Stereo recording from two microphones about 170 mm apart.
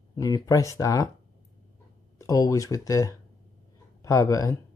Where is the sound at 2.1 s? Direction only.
20° left (ahead or behind).